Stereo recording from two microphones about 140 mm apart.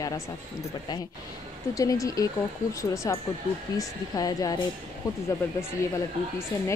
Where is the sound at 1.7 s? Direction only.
25° left (ahead or behind).